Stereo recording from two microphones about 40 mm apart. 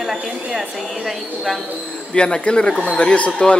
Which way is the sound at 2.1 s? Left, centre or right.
Left.